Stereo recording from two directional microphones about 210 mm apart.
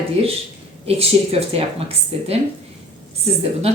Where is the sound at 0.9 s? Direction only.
30° right (ahead or behind).